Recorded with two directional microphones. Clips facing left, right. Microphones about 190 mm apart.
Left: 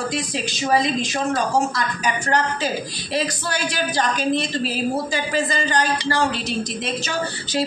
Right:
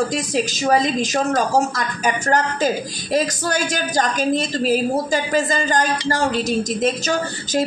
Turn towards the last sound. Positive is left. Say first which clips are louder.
# right 3 dB
turn(degrees=-45)  # may be behind; listen again after turning